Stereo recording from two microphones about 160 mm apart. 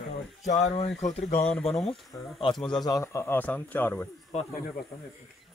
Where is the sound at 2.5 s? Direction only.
5° left (ahead or behind).